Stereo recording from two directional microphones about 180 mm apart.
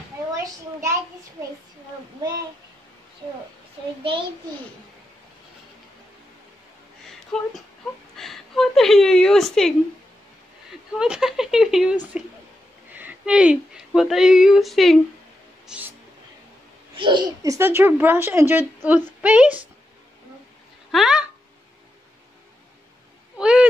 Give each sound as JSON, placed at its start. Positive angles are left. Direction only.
{"t": 0.4, "sound": "a sound", "side_deg": -15}
{"t": 7.3, "sound": "a woman's voice", "side_deg": 5}
{"t": 11.0, "sound": "speech", "side_deg": -5}
{"t": 15.6, "sound": "a sound", "side_deg": -5}
{"t": 16.9, "sound": "speech", "side_deg": -25}
{"t": 20.9, "sound": "speech", "side_deg": -5}
{"t": 23.3, "sound": "cat", "side_deg": -5}